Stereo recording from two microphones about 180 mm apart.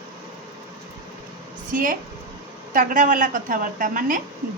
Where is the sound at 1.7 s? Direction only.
50° right (ahead or behind).